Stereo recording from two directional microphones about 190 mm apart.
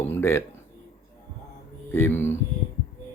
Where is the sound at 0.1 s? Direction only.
10° left (ahead or behind).